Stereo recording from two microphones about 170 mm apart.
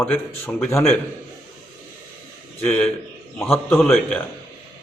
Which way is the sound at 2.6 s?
10° left (ahead or behind).